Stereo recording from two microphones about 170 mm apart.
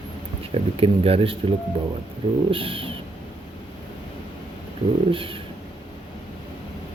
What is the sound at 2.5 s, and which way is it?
Speech, 30° right (ahead or behind).